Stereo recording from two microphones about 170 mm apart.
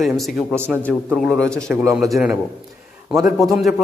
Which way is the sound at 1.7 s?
15° right (ahead or behind).